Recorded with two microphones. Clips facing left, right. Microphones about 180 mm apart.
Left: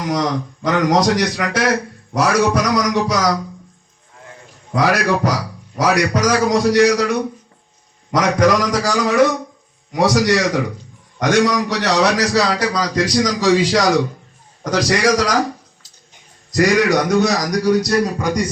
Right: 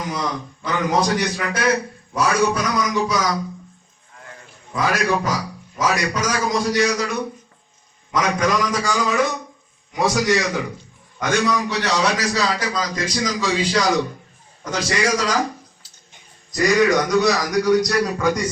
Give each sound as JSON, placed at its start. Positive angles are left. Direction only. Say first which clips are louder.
{"t": 0.0, "sound": "a man's voice", "louder": "left 6 dB", "side_deg": 75}
{"t": 4.7, "sound": "a man's voice", "louder": "left 4 dB", "side_deg": 70}
{"t": 16.5, "sound": "a man's voice", "louder": "left 2 dB", "side_deg": 75}
{"t": 17.2, "sound": "a man's voice", "louder": "left 1 dB", "side_deg": 45}
{"t": 17.7, "sound": "speech", "louder": "left 2 dB", "side_deg": 30}